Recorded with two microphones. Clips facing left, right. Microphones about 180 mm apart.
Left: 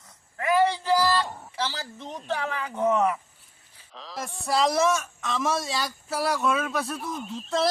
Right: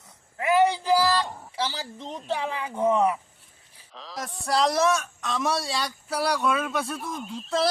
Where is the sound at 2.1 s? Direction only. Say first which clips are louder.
Right 1 dB; 10° right (ahead or behind).